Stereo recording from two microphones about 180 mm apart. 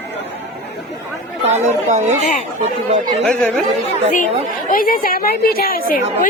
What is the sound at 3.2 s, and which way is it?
Speech, 5° left (ahead or behind).